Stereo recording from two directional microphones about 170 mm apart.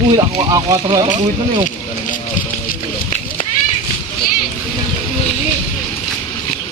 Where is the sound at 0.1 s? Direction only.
20° right (ahead or behind).